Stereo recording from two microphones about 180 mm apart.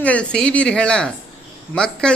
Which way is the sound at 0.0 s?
5° left (ahead or behind).